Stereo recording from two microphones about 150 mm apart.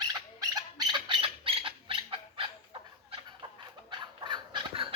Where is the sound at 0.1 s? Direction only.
25° right (ahead or behind).